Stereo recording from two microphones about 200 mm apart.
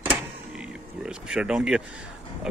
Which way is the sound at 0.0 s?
5° right (ahead or behind).